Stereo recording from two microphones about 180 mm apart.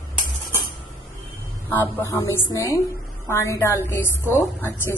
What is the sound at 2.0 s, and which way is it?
A woman's voice, 15° left (ahead or behind).